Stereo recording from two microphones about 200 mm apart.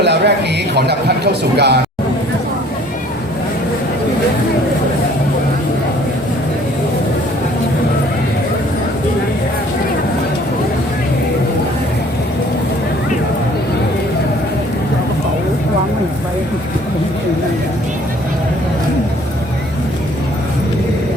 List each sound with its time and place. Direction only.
0.0 s a man's voice: 60° right (ahead or behind)